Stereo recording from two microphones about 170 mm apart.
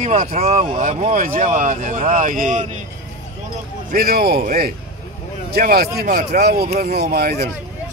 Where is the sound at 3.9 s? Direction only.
65° right (ahead or behind).